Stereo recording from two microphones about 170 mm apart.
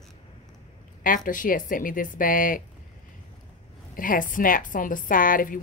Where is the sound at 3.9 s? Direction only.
55° left (ahead or behind).